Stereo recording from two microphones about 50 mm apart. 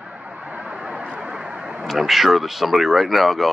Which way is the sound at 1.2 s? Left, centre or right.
Centre.